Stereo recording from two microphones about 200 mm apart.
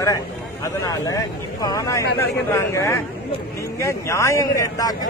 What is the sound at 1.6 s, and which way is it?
A man's voice, 20° left (ahead or behind).